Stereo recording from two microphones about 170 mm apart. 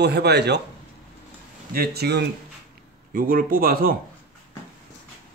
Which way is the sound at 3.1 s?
55° right (ahead or behind).